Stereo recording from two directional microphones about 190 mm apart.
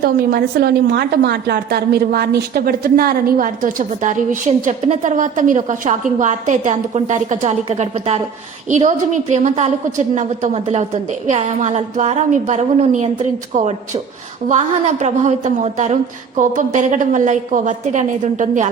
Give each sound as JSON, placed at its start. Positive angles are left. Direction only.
{"t": 0.0, "sound": "a woman's voice", "side_deg": -50}